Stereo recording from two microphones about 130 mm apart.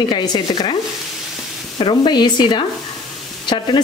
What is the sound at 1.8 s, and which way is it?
Stir, 35° left (ahead or behind).